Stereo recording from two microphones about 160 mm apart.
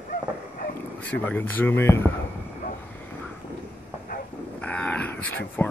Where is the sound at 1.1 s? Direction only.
10° left (ahead or behind).